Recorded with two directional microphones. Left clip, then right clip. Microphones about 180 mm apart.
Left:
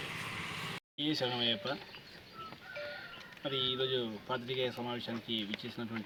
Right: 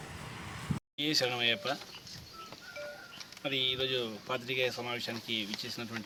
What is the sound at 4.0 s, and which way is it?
Speech, 15° right (ahead or behind).